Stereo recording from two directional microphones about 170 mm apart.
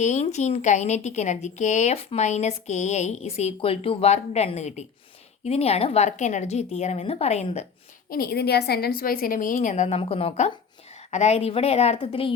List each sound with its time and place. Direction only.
0.0 s a woman's voice: 45° left (ahead or behind)
8.1 s a woman's voice: 65° left (ahead or behind); by 12.3 s 30° left (ahead or behind)